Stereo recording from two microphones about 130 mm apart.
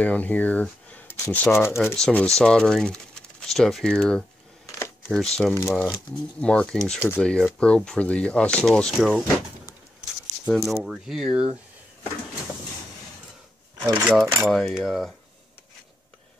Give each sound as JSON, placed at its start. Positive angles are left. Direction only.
{"t": 0.0, "sound": "speech", "side_deg": 10}
{"t": 2.0, "sound": "speech", "side_deg": 5}
{"t": 4.6, "sound": "a sound", "side_deg": 20}
{"t": 5.1, "sound": "speech", "side_deg": 5}
{"t": 5.5, "sound": "speech", "side_deg": 20}
{"t": 6.4, "sound": "speech", "side_deg": 5}
{"t": 10.5, "sound": "speech", "side_deg": 0}
{"t": 13.9, "sound": "speech", "side_deg": -5}